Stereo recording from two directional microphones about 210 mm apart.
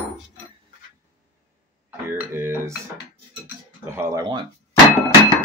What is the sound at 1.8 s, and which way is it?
Speech, 10° right (ahead or behind).